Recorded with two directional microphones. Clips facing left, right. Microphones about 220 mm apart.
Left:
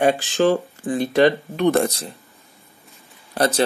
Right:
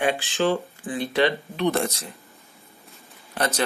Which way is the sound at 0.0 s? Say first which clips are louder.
Left 6 dB; 45° left (ahead or behind).